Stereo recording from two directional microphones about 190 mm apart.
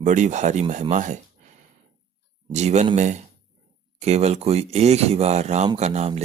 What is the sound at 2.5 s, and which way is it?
Speech, 35° right (ahead or behind).